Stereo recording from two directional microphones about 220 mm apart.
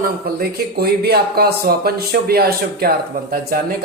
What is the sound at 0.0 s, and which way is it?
Speech, 45° right (ahead or behind).